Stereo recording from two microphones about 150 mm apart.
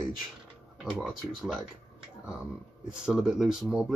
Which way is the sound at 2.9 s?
5° right (ahead or behind).